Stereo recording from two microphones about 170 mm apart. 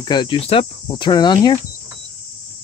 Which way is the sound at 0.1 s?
30° left (ahead or behind).